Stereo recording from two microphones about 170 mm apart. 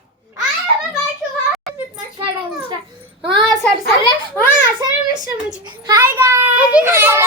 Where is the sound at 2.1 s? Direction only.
25° right (ahead or behind).